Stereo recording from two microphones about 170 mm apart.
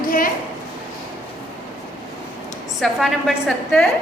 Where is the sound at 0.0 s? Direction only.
55° left (ahead or behind).